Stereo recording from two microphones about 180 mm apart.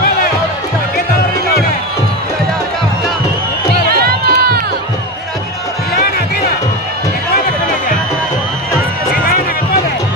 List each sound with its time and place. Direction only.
3.8 s crowd: 60° right (ahead or behind)